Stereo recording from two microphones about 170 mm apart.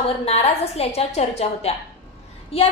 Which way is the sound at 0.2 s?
35° left (ahead or behind).